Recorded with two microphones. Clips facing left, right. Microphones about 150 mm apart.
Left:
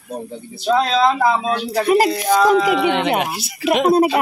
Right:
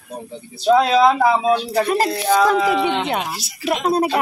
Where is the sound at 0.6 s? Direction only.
10° right (ahead or behind).